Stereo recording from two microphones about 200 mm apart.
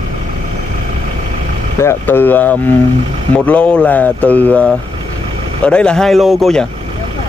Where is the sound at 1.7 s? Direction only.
10° left (ahead or behind).